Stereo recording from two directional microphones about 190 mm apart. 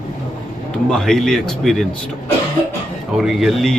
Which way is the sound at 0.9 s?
Centre (ahead or behind).